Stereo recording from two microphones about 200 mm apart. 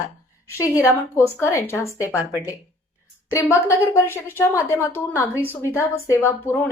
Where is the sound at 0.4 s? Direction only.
15° left (ahead or behind).